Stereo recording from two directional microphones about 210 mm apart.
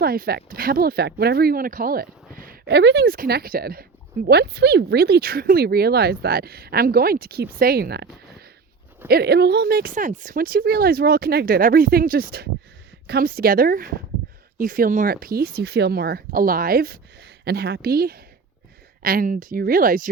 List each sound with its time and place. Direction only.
0.0 s speech: 45° right (ahead or behind)